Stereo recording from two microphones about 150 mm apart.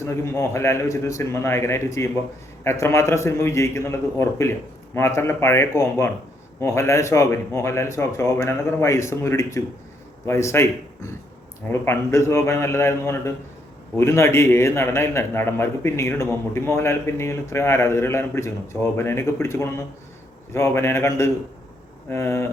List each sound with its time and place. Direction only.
0.0 s a man's voice: 20° left (ahead or behind)